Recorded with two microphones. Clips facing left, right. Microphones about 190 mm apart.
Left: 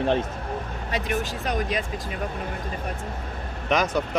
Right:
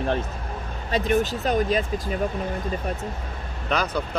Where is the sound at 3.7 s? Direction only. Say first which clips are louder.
Left 2 dB; 20° left (ahead or behind).